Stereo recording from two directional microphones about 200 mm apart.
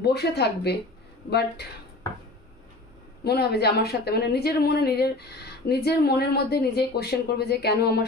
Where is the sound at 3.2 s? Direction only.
55° left (ahead or behind).